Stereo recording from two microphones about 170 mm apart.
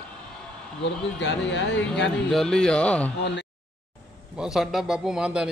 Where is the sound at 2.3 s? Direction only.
5° left (ahead or behind).